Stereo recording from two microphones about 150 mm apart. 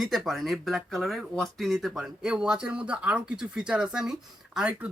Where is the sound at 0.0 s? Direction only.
Centre (ahead or behind).